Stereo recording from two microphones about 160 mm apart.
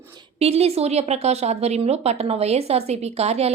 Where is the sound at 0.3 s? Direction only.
40° right (ahead or behind).